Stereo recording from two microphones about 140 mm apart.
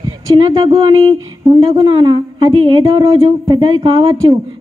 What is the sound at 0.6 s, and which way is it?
Speech, 35° right (ahead or behind).